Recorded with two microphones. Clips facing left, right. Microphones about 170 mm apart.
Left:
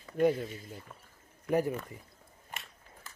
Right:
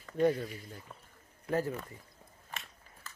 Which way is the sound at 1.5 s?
15° left (ahead or behind).